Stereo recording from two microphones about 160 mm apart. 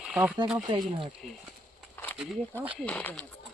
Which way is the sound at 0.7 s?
35° right (ahead or behind).